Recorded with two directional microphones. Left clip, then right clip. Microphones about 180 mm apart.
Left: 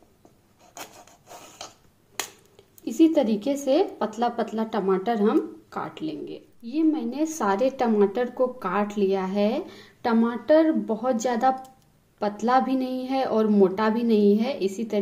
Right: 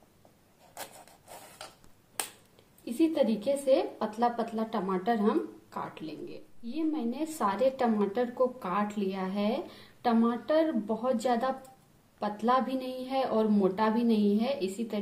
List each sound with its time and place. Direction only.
2.8 s a woman's voice: 40° left (ahead or behind)